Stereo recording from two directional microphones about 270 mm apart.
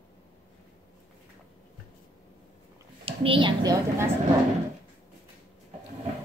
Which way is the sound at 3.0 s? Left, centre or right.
Right.